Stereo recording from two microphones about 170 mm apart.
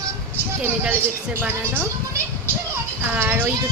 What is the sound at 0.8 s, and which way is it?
A woman's voice, 10° right (ahead or behind).